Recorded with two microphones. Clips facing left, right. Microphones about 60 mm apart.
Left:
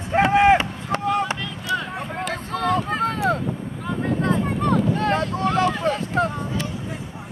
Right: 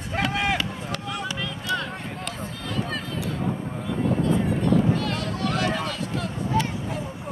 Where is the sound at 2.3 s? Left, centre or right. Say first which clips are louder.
Left 10 dB; left.